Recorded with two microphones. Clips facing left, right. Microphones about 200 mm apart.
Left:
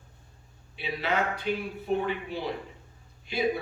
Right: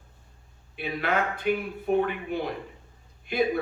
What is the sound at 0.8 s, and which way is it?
A man's voice, 55° right (ahead or behind).